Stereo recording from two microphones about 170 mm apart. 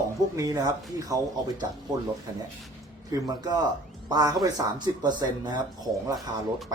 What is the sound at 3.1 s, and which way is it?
Speech, 25° right (ahead or behind).